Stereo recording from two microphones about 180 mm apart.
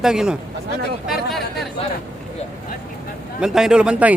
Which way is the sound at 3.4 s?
5° right (ahead or behind).